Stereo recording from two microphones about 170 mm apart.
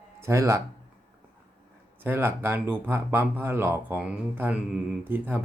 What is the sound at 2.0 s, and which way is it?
Speech, 10° right (ahead or behind).